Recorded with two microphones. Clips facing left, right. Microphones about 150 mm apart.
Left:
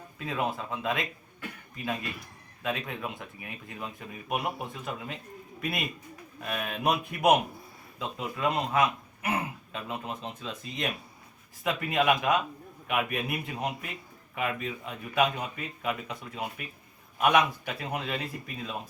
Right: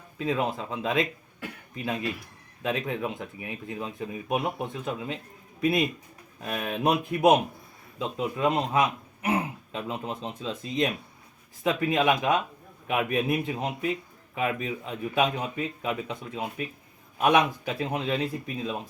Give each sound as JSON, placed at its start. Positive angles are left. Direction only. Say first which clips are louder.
{"t": 0.3, "sound": "a man's voice", "louder": "right 3 dB", "side_deg": -30}
{"t": 6.4, "sound": "a man's voice", "louder": "right 3 dB", "side_deg": -30}